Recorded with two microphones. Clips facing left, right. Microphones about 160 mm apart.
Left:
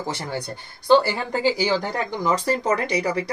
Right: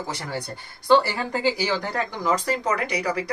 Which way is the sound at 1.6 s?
20° left (ahead or behind).